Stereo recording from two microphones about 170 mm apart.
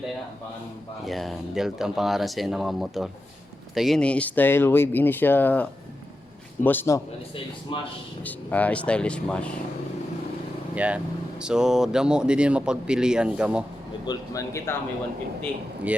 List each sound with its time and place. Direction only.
1.0 s speech: centre (ahead or behind)
7.7 s a man's voice: 30° left (ahead or behind)
8.2 s speech: 10° left (ahead or behind)
10.8 s speech: 5° right (ahead or behind)
14.1 s speech: 20° left (ahead or behind)